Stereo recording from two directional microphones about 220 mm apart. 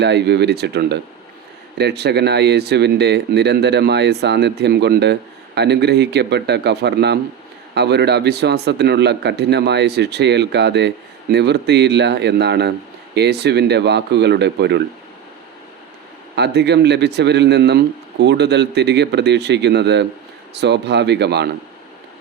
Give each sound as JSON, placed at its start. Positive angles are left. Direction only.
{"t": 0.0, "sound": "speech", "side_deg": -50}
{"t": 16.3, "sound": "speech", "side_deg": -50}